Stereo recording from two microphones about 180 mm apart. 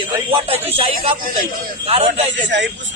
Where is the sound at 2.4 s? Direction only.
90° right.